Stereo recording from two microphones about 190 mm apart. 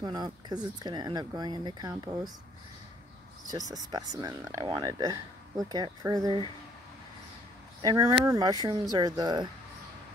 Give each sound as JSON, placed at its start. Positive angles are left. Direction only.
{"t": 0.0, "sound": "speech", "side_deg": -20}
{"t": 3.4, "sound": "speech", "side_deg": -20}
{"t": 7.8, "sound": "speech", "side_deg": -15}